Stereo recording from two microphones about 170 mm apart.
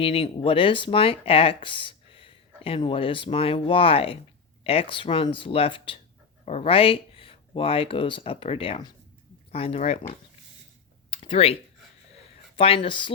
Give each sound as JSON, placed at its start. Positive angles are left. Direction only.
{"t": 0.0, "sound": "speech", "side_deg": 35}
{"t": 11.1, "sound": "a sound", "side_deg": 35}
{"t": 12.5, "sound": "speech", "side_deg": 35}